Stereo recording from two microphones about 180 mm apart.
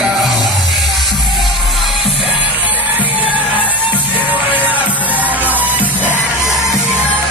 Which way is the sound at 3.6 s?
10° right (ahead or behind).